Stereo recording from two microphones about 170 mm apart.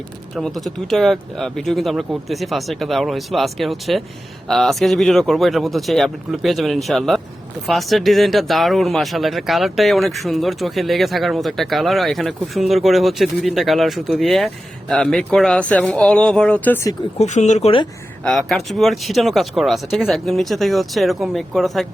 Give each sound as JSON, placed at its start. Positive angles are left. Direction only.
{"t": 0.3, "sound": "speech", "side_deg": 0}
{"t": 17.2, "sound": "speech", "side_deg": 45}
{"t": 18.2, "sound": "speech", "side_deg": 0}